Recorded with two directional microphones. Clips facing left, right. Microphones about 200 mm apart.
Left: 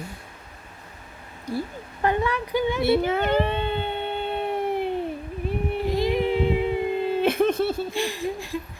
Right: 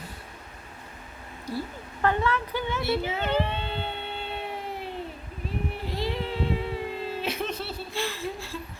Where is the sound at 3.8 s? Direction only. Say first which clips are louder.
Left 6 dB; 15° left (ahead or behind).